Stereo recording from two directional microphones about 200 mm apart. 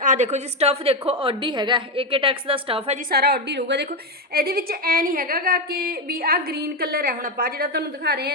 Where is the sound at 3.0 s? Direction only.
50° right (ahead or behind).